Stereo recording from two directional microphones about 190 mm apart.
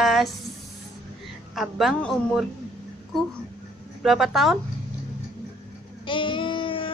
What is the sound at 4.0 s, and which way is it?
Speech, centre (ahead or behind).